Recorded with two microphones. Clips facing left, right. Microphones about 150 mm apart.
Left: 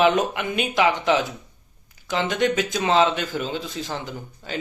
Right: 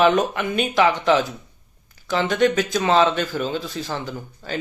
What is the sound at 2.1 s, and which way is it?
Speech, 20° left (ahead or behind).